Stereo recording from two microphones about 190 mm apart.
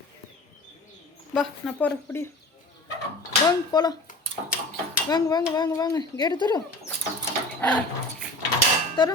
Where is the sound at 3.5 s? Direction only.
20° left (ahead or behind).